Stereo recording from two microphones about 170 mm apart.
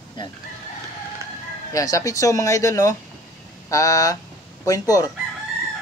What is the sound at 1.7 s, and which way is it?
Speech, 20° left (ahead or behind).